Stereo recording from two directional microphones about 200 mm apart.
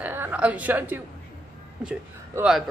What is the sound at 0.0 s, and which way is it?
A woman's voice, 10° right (ahead or behind).